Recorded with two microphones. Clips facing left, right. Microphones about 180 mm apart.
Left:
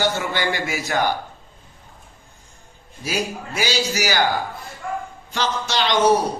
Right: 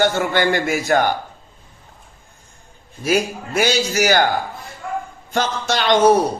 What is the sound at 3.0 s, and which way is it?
A man's voice, 55° right (ahead or behind).